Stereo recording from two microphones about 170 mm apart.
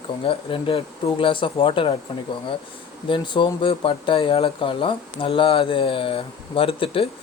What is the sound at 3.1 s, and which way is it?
Speech, 30° left (ahead or behind).